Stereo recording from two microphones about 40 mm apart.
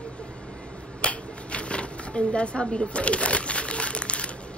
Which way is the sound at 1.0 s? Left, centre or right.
Left.